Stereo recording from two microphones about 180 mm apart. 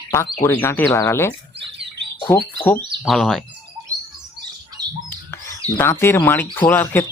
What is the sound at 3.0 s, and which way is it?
Speech, centre (ahead or behind).